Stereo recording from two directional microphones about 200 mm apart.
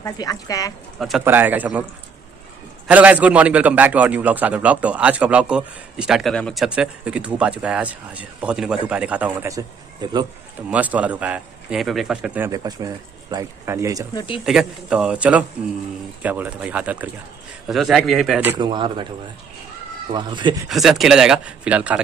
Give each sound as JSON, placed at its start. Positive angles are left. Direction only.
{"t": 0.0, "sound": "speech", "side_deg": 20}
{"t": 0.9, "sound": "a man's voice", "side_deg": 0}
{"t": 2.9, "sound": "a man's voice", "side_deg": -5}
{"t": 10.7, "sound": "a man's voice", "side_deg": -5}
{"t": 12.4, "sound": "a man's voice", "side_deg": -20}
{"t": 14.1, "sound": "speech", "side_deg": 25}
{"t": 14.4, "sound": "a man's voice", "side_deg": -5}
{"t": 18.6, "sound": "speech", "side_deg": -25}
{"t": 20.1, "sound": "speech", "side_deg": -25}
{"t": 20.6, "sound": "speech", "side_deg": 0}